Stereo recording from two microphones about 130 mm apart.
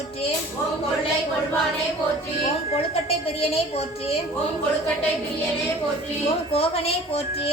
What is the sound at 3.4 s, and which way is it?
Speech, 50° left (ahead or behind).